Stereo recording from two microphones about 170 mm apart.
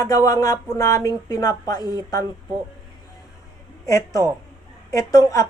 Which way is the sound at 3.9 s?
20° left (ahead or behind).